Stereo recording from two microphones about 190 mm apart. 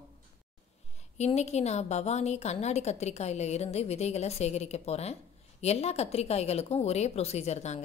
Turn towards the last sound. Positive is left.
turn(degrees=35)  # may be behind; listen again after turning